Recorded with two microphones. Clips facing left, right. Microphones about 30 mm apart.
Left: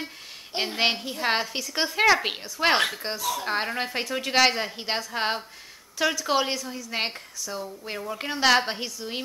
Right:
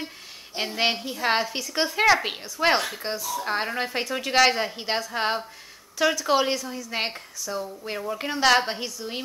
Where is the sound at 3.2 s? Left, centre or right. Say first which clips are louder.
Left 2 dB; left.